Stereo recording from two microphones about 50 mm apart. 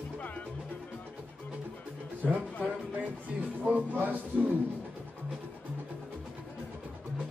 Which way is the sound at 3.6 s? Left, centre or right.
Right.